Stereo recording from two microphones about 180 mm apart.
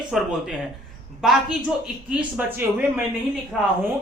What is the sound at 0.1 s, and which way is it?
A woman's voice, centre (ahead or behind).